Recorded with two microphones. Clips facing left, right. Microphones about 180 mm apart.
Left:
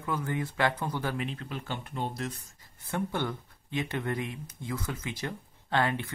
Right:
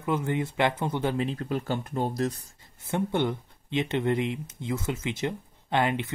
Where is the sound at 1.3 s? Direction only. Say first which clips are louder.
Right 7 dB; 40° right (ahead or behind).